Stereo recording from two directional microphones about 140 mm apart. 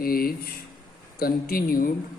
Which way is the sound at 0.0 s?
90° left.